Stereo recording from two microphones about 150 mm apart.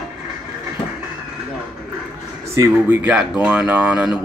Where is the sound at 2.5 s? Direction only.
15° right (ahead or behind).